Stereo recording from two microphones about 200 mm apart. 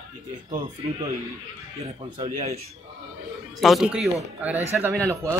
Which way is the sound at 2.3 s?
40° right (ahead or behind).